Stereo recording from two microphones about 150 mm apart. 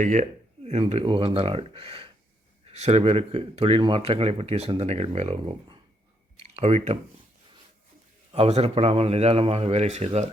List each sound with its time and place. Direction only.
0.0 s speech: 55° right (ahead or behind)
6.3 s clicking: 40° right (ahead or behind)
8.3 s speech: 45° right (ahead or behind)